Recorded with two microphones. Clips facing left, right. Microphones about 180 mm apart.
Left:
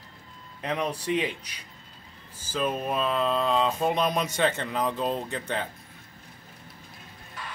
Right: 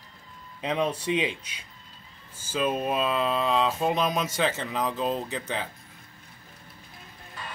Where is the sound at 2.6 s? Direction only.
5° right (ahead or behind).